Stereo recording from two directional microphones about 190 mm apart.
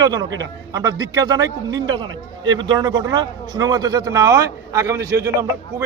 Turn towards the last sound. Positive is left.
turn(degrees=-15)  # may be behind; listen again after turning